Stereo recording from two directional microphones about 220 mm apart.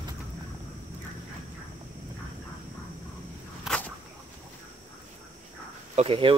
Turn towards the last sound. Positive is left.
turn(degrees=-25)  # may be behind; listen again after turning